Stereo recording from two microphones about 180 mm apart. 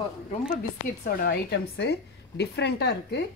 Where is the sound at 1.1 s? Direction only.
60° left (ahead or behind).